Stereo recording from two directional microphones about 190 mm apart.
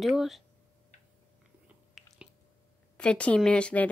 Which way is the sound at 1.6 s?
5° right (ahead or behind).